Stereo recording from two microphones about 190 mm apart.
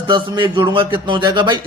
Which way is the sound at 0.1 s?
25° right (ahead or behind).